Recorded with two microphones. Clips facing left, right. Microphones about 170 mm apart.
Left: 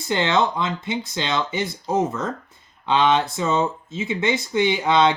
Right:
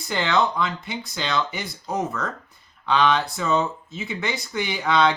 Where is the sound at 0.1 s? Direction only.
25° left (ahead or behind).